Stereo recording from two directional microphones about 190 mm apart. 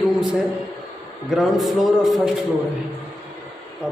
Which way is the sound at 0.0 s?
5° right (ahead or behind).